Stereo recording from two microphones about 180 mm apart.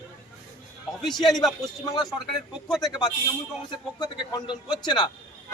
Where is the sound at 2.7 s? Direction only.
Centre (ahead or behind).